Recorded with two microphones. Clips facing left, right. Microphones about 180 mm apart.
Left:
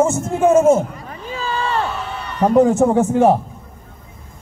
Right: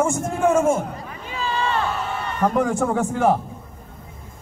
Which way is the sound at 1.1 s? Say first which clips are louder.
Left 2 dB; 40° left (ahead or behind).